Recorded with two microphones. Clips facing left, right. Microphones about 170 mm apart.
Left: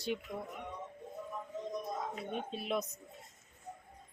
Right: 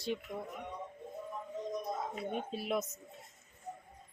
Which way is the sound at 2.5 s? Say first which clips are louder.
Even; 5° right (ahead or behind).